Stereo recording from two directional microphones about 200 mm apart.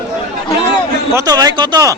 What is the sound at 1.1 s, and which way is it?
Speech, 20° right (ahead or behind).